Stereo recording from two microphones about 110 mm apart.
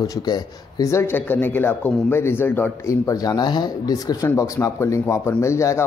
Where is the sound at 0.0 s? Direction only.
35° left (ahead or behind); by 2.7 s 20° left (ahead or behind).